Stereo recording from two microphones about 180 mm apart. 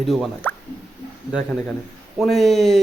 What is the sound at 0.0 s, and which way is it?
Speech, centre (ahead or behind).